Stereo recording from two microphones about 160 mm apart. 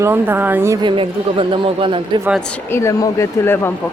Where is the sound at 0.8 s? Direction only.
35° right (ahead or behind).